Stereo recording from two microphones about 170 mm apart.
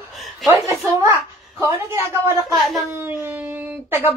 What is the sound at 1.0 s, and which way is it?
A woman's voice, 15° right (ahead or behind).